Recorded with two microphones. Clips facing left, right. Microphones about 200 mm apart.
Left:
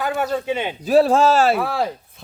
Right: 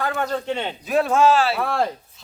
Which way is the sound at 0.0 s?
5° left (ahead or behind).